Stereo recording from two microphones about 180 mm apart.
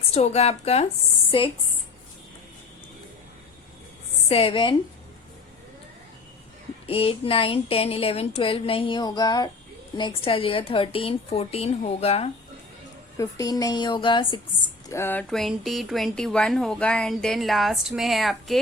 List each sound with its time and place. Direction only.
0.1 s a woman's voice: 35° left (ahead or behind)
4.3 s a woman's voice: 30° left (ahead or behind)
6.8 s a woman's voice: 30° left (ahead or behind)
13.1 s a woman's voice: 20° left (ahead or behind)
14.8 s speech: 15° left (ahead or behind)